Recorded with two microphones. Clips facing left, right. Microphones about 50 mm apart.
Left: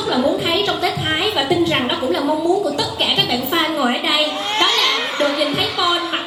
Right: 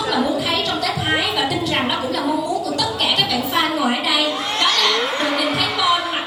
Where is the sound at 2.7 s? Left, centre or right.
Left.